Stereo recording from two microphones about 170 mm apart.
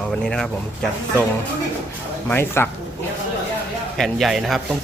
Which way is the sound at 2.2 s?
15° left (ahead or behind).